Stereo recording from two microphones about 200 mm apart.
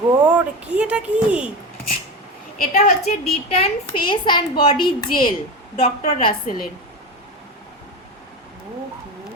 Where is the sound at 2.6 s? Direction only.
35° left (ahead or behind).